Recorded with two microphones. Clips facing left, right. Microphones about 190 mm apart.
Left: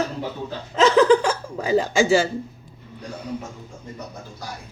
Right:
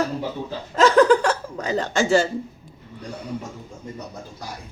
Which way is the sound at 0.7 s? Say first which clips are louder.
Even; centre (ahead or behind).